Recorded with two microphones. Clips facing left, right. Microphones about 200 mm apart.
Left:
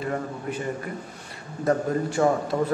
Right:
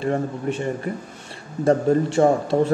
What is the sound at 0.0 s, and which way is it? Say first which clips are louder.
A man's voice: right 6 dB; 25° right (ahead or behind).